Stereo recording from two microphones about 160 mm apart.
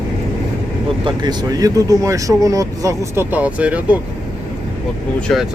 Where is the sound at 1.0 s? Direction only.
25° right (ahead or behind); by 4.0 s 10° right (ahead or behind).